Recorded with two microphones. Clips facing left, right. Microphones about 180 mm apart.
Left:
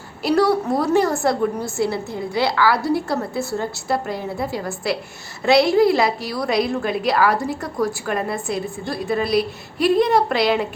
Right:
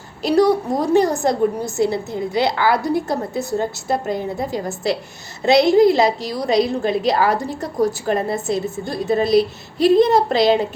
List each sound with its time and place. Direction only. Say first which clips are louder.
0.2 s a woman's voice: right 2 dB; 20° right (ahead or behind)